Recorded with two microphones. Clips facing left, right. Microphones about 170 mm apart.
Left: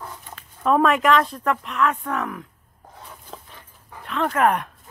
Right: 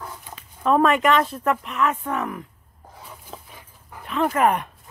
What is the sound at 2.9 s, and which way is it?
Dog, 5° right (ahead or behind).